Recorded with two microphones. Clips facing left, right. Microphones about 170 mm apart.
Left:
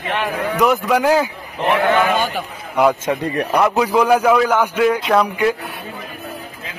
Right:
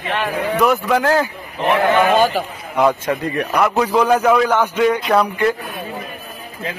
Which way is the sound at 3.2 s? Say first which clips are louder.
Left 1 dB; 35° left (ahead or behind).